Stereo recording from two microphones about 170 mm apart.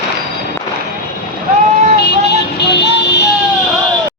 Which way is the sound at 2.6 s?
80° left.